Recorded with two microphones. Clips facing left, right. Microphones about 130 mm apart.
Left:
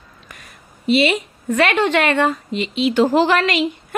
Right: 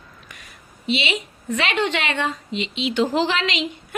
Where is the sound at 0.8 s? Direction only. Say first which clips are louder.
Left 8 dB; 50° left (ahead or behind).